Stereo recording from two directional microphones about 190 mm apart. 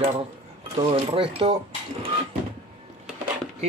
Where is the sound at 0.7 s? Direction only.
30° right (ahead or behind).